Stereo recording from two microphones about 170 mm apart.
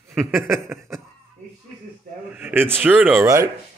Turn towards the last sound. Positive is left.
turn(degrees=-15)  # may be behind; listen again after turning